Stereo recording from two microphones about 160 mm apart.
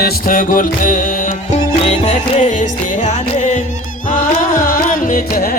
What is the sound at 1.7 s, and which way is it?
Music, 40° left (ahead or behind).